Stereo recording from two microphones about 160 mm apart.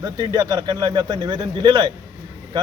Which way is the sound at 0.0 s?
25° right (ahead or behind).